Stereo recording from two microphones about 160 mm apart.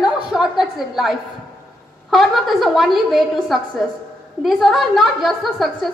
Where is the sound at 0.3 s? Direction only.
Centre (ahead or behind).